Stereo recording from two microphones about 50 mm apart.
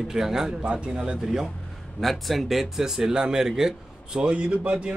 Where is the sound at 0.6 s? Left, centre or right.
Right.